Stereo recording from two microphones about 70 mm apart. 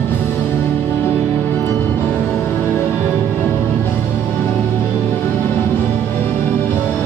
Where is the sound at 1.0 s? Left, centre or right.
Left.